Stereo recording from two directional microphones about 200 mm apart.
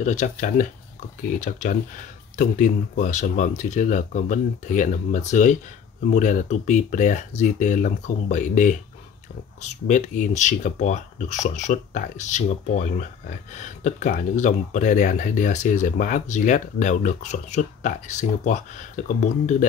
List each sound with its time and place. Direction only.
0.0 s speech: 40° left (ahead or behind)